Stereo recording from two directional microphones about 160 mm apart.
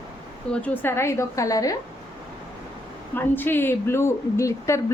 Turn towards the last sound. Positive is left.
turn(degrees=20)  # may be behind; listen again after turning